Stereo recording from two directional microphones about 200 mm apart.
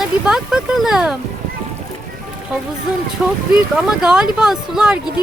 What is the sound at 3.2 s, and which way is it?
Speech, 5° right (ahead or behind).